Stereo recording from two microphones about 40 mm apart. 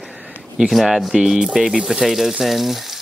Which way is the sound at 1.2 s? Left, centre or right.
Centre.